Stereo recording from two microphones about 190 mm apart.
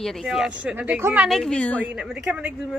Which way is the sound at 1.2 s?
5° left (ahead or behind).